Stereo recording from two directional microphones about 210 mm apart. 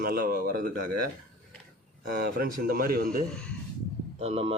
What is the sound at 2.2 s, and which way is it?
A man's voice, 45° right (ahead or behind).